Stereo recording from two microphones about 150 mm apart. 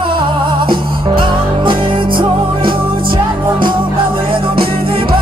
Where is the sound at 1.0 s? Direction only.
35° right (ahead or behind).